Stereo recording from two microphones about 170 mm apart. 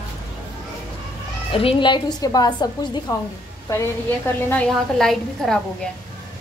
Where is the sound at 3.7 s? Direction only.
15° left (ahead or behind).